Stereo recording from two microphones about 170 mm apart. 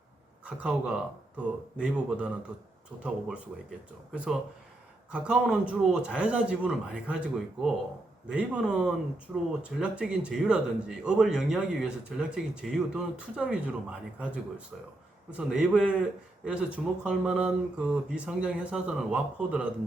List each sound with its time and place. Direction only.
0.4 s speech: 5° right (ahead or behind)
4.1 s speech: 10° right (ahead or behind)